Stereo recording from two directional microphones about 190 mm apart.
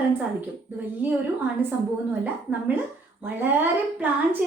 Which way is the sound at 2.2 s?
10° right (ahead or behind).